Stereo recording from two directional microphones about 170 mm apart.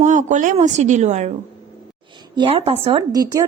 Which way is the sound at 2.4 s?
35° right (ahead or behind).